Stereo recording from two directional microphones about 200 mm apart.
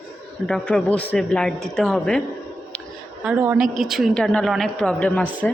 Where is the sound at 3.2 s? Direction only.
5° right (ahead or behind).